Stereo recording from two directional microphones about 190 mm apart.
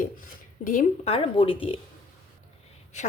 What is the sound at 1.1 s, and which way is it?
Speech, 30° left (ahead or behind).